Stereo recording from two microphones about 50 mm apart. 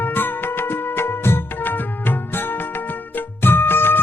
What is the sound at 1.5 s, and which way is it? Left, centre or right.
Music, left.